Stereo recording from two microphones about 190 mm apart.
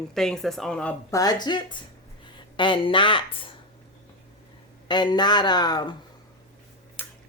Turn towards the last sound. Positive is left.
turn(degrees=20)  # may be behind; listen again after turning